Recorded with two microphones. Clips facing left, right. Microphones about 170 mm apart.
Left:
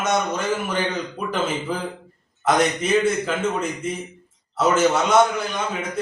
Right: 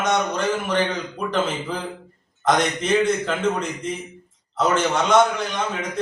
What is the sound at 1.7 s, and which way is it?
A man's voice, 5° left (ahead or behind).